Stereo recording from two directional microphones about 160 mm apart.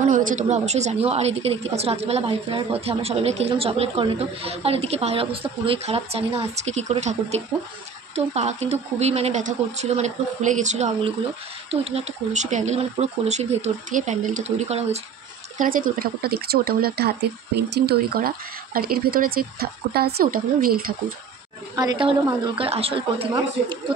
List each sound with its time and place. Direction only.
0.1 s a woman's voice: 50° right (ahead or behind)
11.7 s speech: 40° right (ahead or behind)
15.6 s speech: 65° right (ahead or behind)
21.7 s a woman's voice: 30° right (ahead or behind)